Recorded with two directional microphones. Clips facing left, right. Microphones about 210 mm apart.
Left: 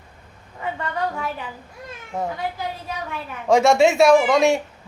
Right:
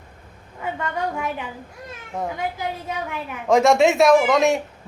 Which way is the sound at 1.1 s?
15° right (ahead or behind).